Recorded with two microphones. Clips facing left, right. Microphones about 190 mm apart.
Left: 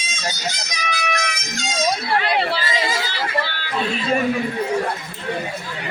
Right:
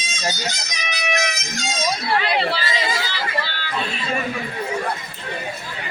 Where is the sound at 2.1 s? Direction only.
50° left (ahead or behind).